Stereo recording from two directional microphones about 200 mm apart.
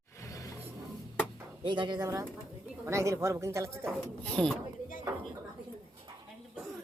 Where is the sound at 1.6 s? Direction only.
25° right (ahead or behind).